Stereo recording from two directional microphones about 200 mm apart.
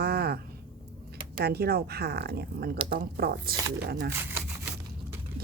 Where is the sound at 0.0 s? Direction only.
50° right (ahead or behind).